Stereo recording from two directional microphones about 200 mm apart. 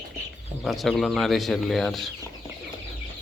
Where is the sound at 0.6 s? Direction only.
Centre (ahead or behind).